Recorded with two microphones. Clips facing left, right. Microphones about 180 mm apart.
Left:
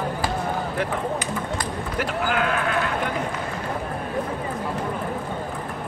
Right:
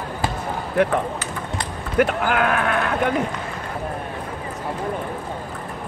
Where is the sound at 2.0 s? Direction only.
60° right (ahead or behind).